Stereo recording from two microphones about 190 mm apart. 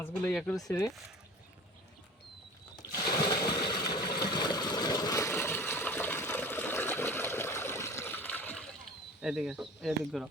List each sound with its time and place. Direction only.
0.0 s speech: 5° left (ahead or behind)
2.9 s sewing machine: 20° left (ahead or behind)
3.7 s vehicle: 20° left (ahead or behind)
4.3 s a sound: 20° left (ahead or behind)
9.2 s speech: 5° right (ahead or behind)